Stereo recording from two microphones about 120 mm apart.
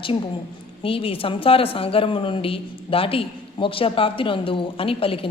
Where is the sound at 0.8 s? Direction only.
50° left (ahead or behind).